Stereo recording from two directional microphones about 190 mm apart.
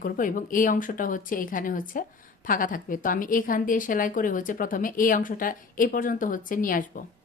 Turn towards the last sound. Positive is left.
turn(degrees=45)  # may be behind; listen again after turning